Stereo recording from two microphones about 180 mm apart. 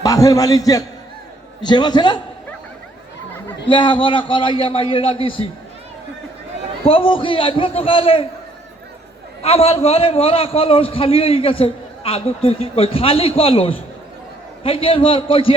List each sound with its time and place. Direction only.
0.0 s a man's voice: 20° left (ahead or behind)
3.7 s a man's voice: 25° left (ahead or behind)
6.8 s a man's voice: 30° left (ahead or behind)
9.4 s a man's voice: 35° left (ahead or behind)